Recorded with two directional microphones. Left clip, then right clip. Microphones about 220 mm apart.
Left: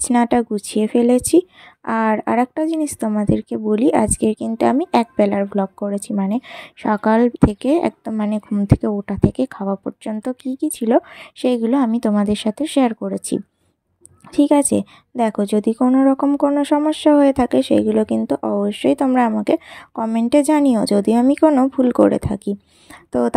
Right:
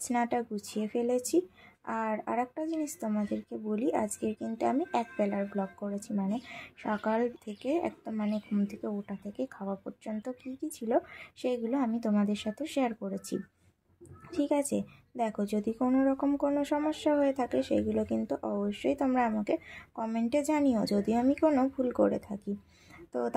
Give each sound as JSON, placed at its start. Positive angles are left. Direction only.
{"t": 0.0, "sound": "a woman's voice", "side_deg": 40}